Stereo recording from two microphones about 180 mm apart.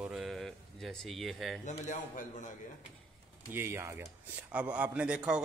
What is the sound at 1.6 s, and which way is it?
Speech, 45° left (ahead or behind).